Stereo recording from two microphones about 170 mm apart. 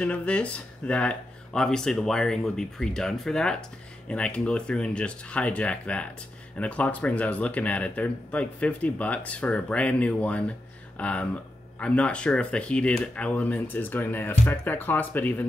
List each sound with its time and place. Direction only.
0.0 s speech: 5° left (ahead or behind)